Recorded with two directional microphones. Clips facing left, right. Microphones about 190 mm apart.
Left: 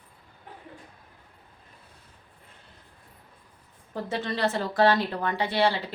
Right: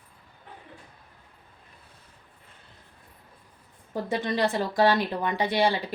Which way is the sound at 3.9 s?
15° right (ahead or behind).